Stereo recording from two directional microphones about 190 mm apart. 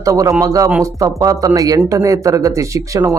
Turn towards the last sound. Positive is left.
turn(degrees=-15)  # may be behind; listen again after turning